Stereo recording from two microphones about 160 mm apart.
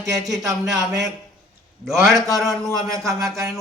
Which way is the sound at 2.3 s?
Centre (ahead or behind).